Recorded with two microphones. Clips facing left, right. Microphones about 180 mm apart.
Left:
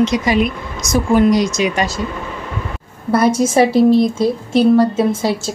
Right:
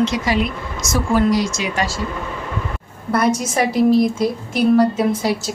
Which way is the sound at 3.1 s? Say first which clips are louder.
Left 5 dB; 30° left (ahead or behind).